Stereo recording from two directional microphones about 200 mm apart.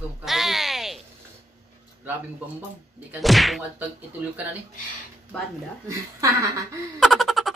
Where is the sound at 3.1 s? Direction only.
Centre (ahead or behind).